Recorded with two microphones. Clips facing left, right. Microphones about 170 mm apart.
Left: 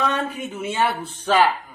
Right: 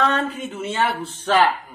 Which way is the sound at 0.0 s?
15° left (ahead or behind).